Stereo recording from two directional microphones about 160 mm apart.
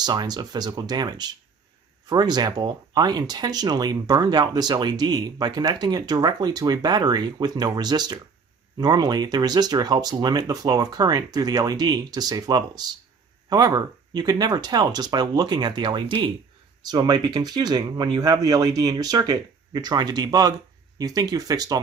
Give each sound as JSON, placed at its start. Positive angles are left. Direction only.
{"t": 0.0, "sound": "speech", "side_deg": -25}